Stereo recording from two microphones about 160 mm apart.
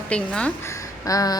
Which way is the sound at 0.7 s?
20° left (ahead or behind).